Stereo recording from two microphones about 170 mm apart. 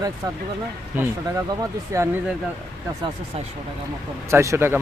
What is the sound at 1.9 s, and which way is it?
Speech, 20° right (ahead or behind).